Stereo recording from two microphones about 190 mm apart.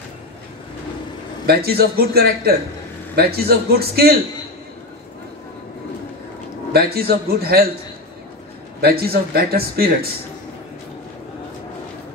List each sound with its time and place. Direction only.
1.4 s a man's voice: 55° right (ahead or behind)
6.7 s speech: 55° right (ahead or behind)
8.8 s speech: 55° right (ahead or behind)